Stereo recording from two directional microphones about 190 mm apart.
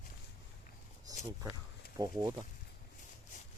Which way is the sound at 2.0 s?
20° right (ahead or behind).